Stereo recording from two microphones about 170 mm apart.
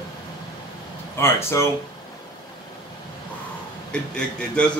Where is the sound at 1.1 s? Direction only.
15° left (ahead or behind).